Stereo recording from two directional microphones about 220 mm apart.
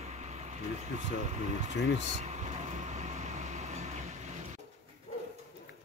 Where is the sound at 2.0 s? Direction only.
30° right (ahead or behind).